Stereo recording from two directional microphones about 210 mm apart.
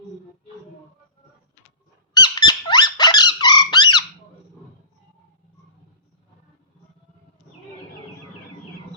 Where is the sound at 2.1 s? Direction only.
20° left (ahead or behind).